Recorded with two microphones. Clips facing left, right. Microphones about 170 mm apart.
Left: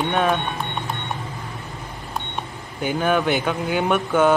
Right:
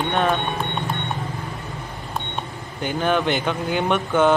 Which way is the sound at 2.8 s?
5° left (ahead or behind).